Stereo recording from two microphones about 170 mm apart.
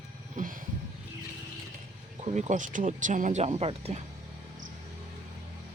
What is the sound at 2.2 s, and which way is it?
Speech, 45° right (ahead or behind).